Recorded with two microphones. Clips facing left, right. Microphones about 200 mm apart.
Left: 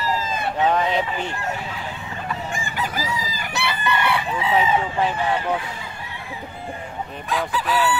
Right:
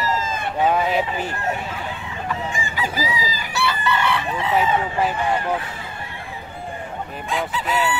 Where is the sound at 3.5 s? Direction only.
15° left (ahead or behind).